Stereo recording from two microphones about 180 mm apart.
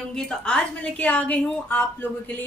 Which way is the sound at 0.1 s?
5° left (ahead or behind).